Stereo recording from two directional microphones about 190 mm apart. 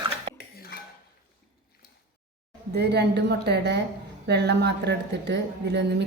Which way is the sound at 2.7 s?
60° right (ahead or behind).